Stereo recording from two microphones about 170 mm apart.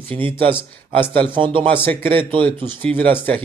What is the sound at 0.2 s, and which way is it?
Speech, 30° right (ahead or behind).